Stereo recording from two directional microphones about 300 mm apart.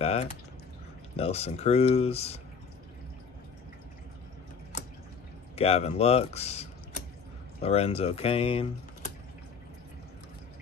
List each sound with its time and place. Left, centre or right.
0.0 s speech: centre
5.6 s speech: centre